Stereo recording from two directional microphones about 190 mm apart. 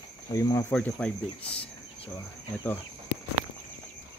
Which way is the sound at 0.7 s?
5° left (ahead or behind).